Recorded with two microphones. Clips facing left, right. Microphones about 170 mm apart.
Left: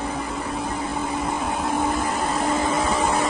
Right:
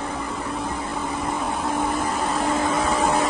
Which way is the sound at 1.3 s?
Centre (ahead or behind).